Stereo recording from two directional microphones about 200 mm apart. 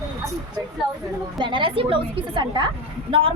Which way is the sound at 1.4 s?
25° right (ahead or behind).